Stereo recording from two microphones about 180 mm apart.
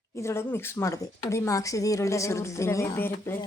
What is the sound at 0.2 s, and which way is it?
Speech, 15° left (ahead or behind).